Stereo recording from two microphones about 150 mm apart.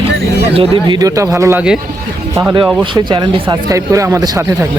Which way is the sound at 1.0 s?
20° right (ahead or behind).